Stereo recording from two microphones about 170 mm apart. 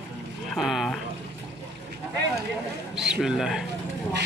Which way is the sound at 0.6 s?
Centre (ahead or behind).